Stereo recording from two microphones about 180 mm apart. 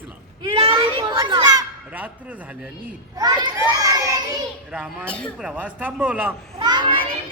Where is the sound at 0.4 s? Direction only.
25° right (ahead or behind).